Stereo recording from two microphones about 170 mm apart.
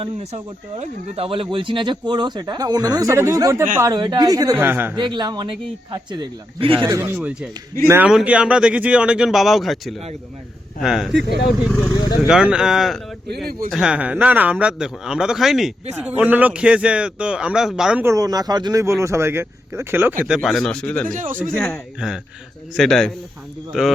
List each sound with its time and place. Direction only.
0.0 s speech: 35° right (ahead or behind); by 4.9 s 10° right (ahead or behind)
4.9 s speech: 25° right (ahead or behind)
6.8 s speech: 15° right (ahead or behind)
7.2 s speech: 5° right (ahead or behind)
11.1 s speech: 90° right
11.7 s speech: 15° left (ahead or behind)
12.3 s speech: 5° right (ahead or behind)
18.0 s speech: 20° right (ahead or behind); by 21.1 s 10° left (ahead or behind)
21.1 s speech: 50° right (ahead or behind)
21.5 s speech: 5° left (ahead or behind)